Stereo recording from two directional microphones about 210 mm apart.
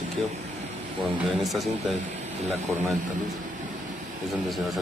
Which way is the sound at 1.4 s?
Centre (ahead or behind).